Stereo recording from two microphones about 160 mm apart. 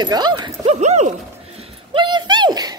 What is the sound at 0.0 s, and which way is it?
Speech, 25° right (ahead or behind).